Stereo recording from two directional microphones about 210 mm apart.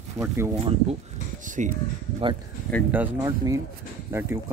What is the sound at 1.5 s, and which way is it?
Speech, 35° right (ahead or behind).